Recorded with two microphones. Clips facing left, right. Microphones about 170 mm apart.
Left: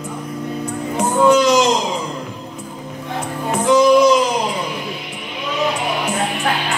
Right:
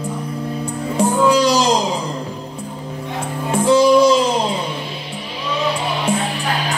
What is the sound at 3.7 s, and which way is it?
Music, 30° right (ahead or behind).